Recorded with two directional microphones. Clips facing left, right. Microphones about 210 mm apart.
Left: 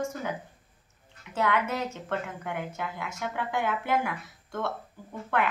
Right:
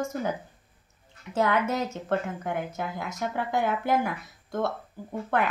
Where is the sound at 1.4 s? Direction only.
40° right (ahead or behind).